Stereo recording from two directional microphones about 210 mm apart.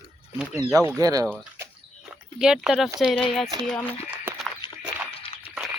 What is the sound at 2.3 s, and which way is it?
Speech, 5° right (ahead or behind).